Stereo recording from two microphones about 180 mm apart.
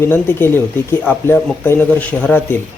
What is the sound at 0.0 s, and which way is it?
Speech, 10° left (ahead or behind).